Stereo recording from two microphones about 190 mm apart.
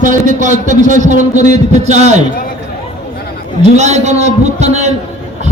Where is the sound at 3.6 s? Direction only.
35° right (ahead or behind).